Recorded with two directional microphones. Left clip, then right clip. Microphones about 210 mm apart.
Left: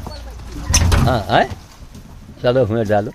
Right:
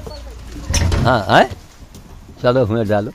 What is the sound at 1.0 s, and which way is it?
Speech, 35° right (ahead or behind).